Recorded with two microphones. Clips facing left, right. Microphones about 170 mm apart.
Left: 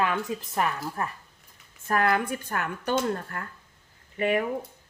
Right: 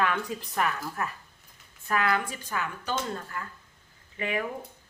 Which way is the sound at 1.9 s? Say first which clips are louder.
Left 3 dB; 45° left (ahead or behind).